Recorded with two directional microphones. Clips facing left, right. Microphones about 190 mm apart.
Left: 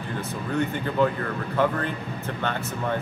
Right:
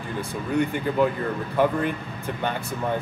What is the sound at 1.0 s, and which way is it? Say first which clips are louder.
Speech: even; 15° right (ahead or behind).